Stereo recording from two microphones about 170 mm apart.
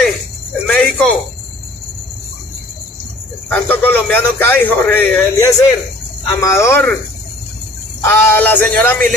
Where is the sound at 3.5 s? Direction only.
10° left (ahead or behind).